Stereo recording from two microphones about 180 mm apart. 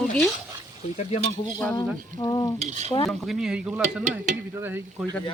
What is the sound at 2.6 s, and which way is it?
Stir, 40° right (ahead or behind).